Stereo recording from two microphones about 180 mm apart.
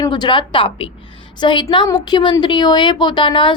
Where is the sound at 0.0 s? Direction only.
25° left (ahead or behind).